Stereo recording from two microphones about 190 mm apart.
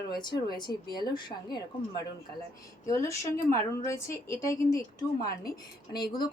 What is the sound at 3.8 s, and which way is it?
A woman's voice, 15° left (ahead or behind).